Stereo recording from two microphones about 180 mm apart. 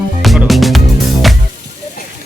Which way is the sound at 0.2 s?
Centre (ahead or behind).